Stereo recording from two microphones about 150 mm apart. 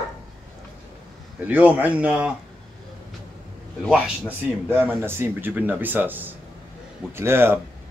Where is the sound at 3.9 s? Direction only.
10° right (ahead or behind).